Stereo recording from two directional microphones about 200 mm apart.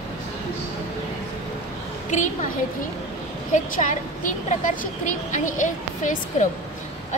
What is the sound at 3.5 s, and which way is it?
A woman's voice, 40° left (ahead or behind).